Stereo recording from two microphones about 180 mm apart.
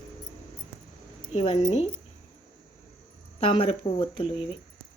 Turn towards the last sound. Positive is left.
turn(degrees=30)  # may be behind; listen again after turning